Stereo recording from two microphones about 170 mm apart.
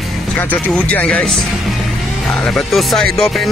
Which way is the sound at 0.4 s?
10° left (ahead or behind).